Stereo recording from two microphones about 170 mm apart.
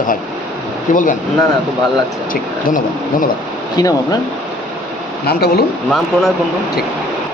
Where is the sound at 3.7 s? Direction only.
25° left (ahead or behind).